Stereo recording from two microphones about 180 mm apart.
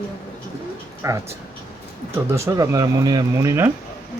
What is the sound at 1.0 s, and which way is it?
Speech, 15° right (ahead or behind).